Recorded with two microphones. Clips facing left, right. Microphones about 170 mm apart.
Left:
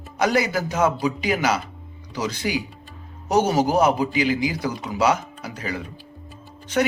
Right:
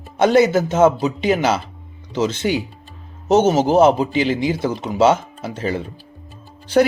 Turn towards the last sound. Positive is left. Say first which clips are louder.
# right 7 dB
turn(degrees=-35)  # may be behind; listen again after turning